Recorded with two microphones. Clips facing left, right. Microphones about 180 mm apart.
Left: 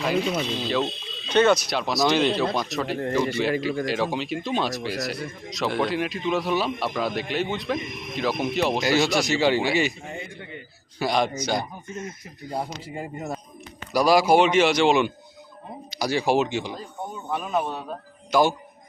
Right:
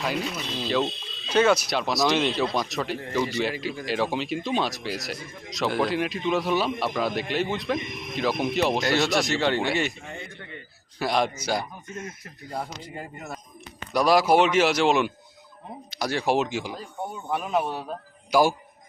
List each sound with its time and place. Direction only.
0.0 s speech: centre (ahead or behind)
11.0 s speech: centre (ahead or behind)
12.5 s speech: 10° left (ahead or behind)
13.0 s a man's voice: 25° left (ahead or behind)
13.9 s a man's voice: centre (ahead or behind)